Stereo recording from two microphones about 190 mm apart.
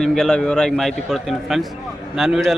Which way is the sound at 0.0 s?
Centre (ahead or behind).